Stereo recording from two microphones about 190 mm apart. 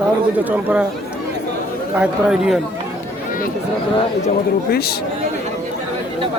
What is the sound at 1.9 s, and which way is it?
Speech, 5° right (ahead or behind).